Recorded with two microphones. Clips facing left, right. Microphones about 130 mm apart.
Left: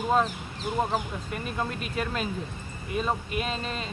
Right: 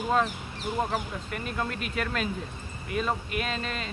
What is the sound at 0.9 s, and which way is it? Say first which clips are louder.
Speech: left 2 dB; 20° left (ahead or behind).